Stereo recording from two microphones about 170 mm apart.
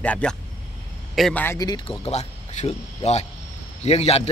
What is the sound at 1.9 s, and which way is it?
A man's voice, 40° left (ahead or behind).